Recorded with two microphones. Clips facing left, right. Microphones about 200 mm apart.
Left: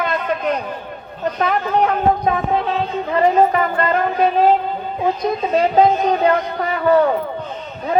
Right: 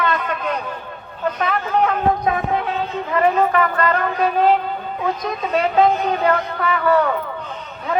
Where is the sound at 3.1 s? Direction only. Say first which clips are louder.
Left 2 dB; 30° left (ahead or behind).